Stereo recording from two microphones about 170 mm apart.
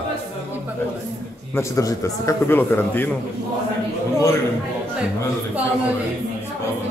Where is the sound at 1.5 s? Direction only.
20° left (ahead or behind).